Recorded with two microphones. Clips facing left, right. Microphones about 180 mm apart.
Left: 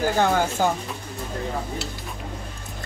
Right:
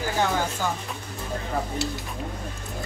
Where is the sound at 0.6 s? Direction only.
50° left (ahead or behind).